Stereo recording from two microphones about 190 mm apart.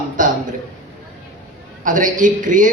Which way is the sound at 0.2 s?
45° right (ahead or behind).